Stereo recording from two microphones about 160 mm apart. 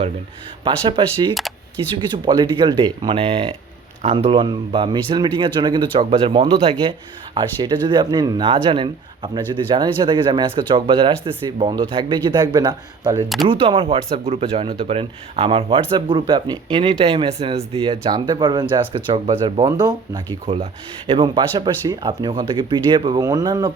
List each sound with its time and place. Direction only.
0.6 s speech: 30° right (ahead or behind)
1.3 s speech: centre (ahead or behind)
2.0 s speech: 30° right (ahead or behind)
13.2 s speech: centre (ahead or behind)
13.5 s speech: 35° right (ahead or behind)